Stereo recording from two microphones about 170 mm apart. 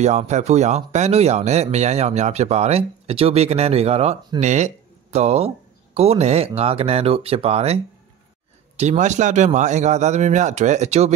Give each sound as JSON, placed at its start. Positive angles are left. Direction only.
{"t": 0.0, "sound": "speech", "side_deg": -40}